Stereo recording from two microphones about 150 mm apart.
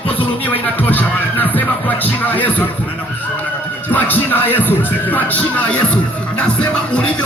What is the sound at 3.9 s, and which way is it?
Speech, 10° left (ahead or behind).